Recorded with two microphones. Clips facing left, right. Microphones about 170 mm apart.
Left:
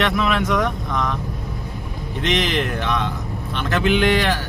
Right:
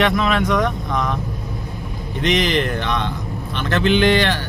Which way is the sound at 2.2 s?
Centre (ahead or behind).